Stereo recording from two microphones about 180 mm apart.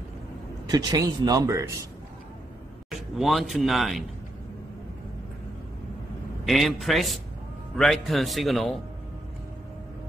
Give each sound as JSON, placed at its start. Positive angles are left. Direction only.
{"t": 0.7, "sound": "speech", "side_deg": -20}
{"t": 2.9, "sound": "a man's voice", "side_deg": 0}
{"t": 6.4, "sound": "speech", "side_deg": 0}